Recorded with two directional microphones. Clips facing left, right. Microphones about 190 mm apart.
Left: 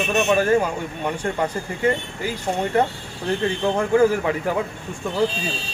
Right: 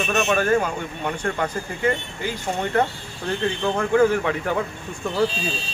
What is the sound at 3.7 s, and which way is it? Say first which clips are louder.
Speech: even; 5° left (ahead or behind).